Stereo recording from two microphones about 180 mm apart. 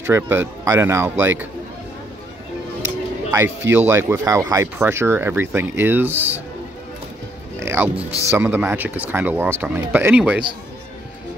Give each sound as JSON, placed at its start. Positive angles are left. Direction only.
{"t": 0.0, "sound": "speech", "side_deg": -15}
{"t": 3.3, "sound": "speech", "side_deg": -10}
{"t": 7.6, "sound": "speech", "side_deg": -10}